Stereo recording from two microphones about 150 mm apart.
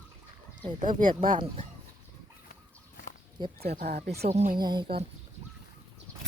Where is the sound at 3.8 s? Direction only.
90° right.